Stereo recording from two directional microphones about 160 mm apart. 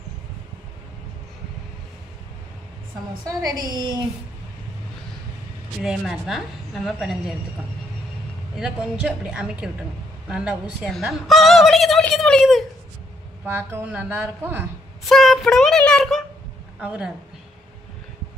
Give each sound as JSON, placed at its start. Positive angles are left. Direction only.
{"t": 3.3, "sound": "a woman's voice", "side_deg": -25}
{"t": 5.8, "sound": "turkey", "side_deg": 0}
{"t": 8.5, "sound": "turkey", "side_deg": -5}
{"t": 13.5, "sound": "speech", "side_deg": -15}
{"t": 15.0, "sound": "child singing", "side_deg": 0}
{"t": 16.8, "sound": "speech", "side_deg": -5}